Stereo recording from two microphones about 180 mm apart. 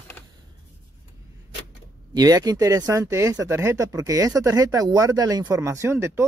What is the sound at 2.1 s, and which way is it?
Speech, 20° right (ahead or behind).